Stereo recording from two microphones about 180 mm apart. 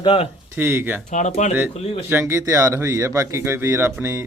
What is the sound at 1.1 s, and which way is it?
Speech, 40° left (ahead or behind).